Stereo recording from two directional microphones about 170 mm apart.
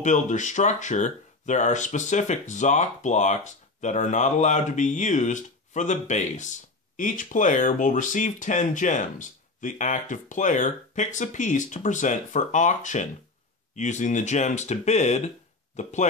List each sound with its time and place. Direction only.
0.0 s speech: 45° left (ahead or behind)